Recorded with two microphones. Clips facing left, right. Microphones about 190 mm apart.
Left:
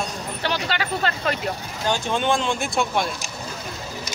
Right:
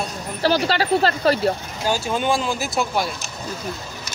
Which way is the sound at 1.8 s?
5° right (ahead or behind).